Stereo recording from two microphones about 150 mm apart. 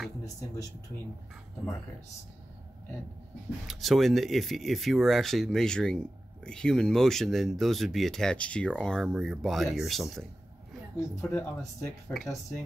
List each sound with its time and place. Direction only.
0.2 s speech: 20° left (ahead or behind)
3.6 s speech: centre (ahead or behind)
11.1 s speech: 20° left (ahead or behind)